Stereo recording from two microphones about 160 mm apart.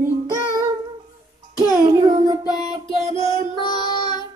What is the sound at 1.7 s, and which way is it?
Child singing, 25° right (ahead or behind).